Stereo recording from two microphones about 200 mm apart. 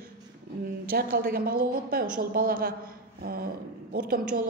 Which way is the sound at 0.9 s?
45° right (ahead or behind).